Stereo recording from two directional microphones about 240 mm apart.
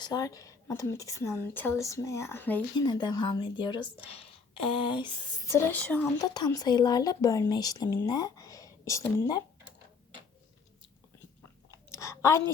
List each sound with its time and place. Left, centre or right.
0.0 s speech: centre
11.9 s chewing: centre